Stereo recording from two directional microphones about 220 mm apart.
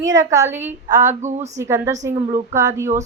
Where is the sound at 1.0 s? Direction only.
35° right (ahead or behind).